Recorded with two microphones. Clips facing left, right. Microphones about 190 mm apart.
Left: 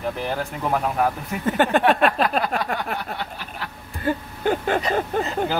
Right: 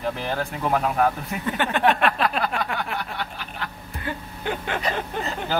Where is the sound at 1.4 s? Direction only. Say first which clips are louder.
Left 3 dB; 45° left (ahead or behind).